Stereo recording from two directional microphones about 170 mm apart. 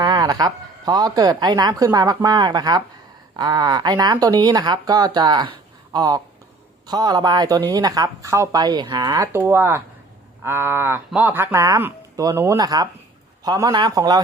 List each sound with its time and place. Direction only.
0.0 s speech: 25° right (ahead or behind)